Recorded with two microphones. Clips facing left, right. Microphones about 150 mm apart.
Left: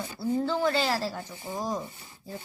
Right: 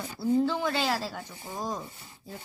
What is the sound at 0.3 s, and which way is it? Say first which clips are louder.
Speech: left 1 dB; 5° right (ahead or behind).